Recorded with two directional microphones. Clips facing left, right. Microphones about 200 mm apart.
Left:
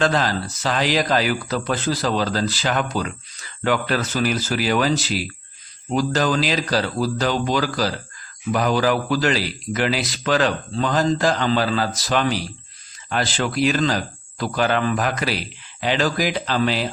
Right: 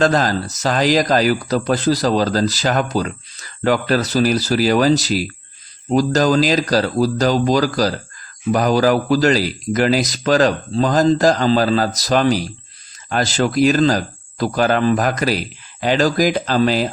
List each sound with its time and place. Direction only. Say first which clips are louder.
0.0 s speech: right 4 dB; 40° right (ahead or behind)